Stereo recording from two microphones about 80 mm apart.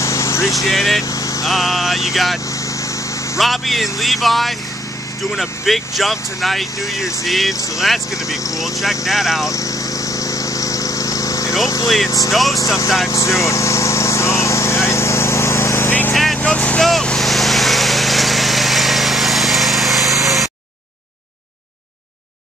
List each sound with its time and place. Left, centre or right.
0.0 s vehicle: left
0.7 s speech: centre
1.0 s vehicle: left
1.4 s speech: centre
9.5 s a sound: left
12.3 s speech: centre
13.1 s lawn mower: left
15.9 s vehicle: left; by 20.4 s centre